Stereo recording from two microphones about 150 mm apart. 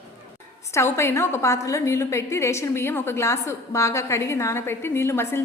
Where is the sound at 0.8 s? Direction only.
15° left (ahead or behind).